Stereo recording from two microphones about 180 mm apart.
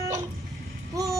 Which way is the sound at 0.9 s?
15° right (ahead or behind).